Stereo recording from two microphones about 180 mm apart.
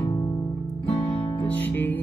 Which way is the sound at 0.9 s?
30° left (ahead or behind).